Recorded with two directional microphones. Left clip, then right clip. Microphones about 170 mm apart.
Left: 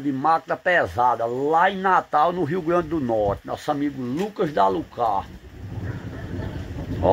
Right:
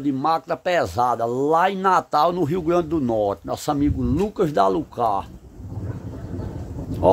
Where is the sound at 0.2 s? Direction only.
15° right (ahead or behind).